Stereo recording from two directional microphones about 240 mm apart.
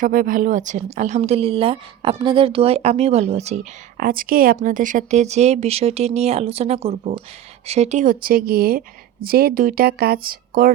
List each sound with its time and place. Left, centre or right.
0.0 s a woman's voice: right